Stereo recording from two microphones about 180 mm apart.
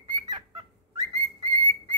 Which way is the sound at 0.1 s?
25° right (ahead or behind).